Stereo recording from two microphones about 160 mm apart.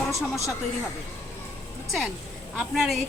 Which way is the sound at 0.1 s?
20° left (ahead or behind).